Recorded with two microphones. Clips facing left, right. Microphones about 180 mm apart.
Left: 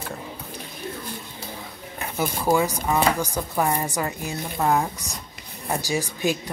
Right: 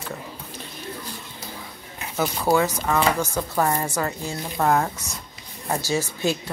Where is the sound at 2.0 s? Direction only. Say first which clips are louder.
Right 1 dB; 55° left (ahead or behind).